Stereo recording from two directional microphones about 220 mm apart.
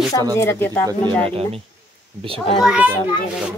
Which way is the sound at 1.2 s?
25° right (ahead or behind).